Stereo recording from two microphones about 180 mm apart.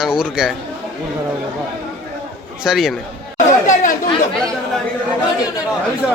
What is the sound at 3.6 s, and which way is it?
Chatter, 45° left (ahead or behind).